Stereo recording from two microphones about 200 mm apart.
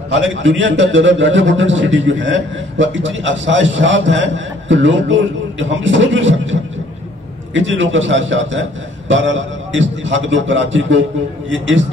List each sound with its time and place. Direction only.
0.1 s a man's voice: 70° right (ahead or behind)